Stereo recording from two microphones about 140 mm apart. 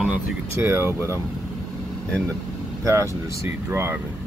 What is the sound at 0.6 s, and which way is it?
Speech, 15° right (ahead or behind).